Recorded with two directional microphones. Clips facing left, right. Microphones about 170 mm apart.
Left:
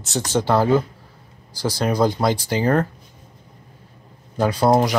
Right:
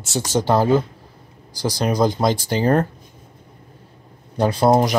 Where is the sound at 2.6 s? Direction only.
30° right (ahead or behind).